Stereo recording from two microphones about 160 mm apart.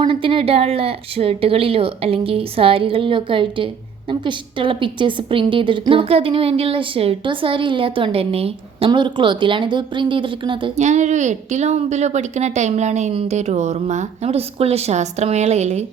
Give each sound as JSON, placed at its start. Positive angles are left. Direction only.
{"t": 0.0, "sound": "a woman's voice", "side_deg": -35}
{"t": 10.8, "sound": "a woman's voice", "side_deg": -45}